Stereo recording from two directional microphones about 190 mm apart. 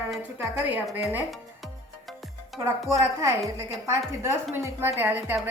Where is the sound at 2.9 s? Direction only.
15° right (ahead or behind).